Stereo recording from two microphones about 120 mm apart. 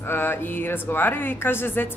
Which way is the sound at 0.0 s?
20° left (ahead or behind).